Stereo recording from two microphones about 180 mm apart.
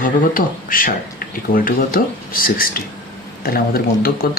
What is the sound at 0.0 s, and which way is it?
Speech, 50° left (ahead or behind).